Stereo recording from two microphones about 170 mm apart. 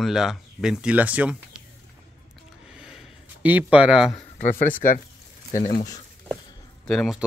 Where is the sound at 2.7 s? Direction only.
5° right (ahead or behind).